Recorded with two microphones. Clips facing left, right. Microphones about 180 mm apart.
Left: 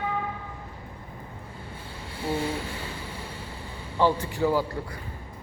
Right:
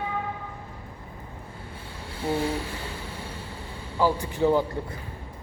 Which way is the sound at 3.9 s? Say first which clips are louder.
Left 1 dB; 5° right (ahead or behind).